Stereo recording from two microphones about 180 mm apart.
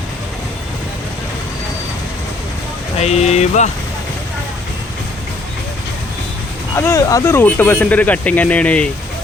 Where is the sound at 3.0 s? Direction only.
40° left (ahead or behind).